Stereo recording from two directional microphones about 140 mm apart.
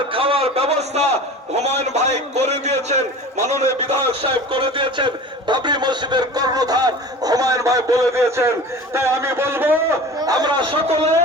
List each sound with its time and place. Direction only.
0.1 s a sound: 40° right (ahead or behind)
1.5 s a man's voice: 50° right (ahead or behind)
3.8 s speech: 40° right (ahead or behind); by 9.8 s 15° right (ahead or behind)
10.2 s a man's voice: 25° right (ahead or behind); by 11.1 s 45° right (ahead or behind)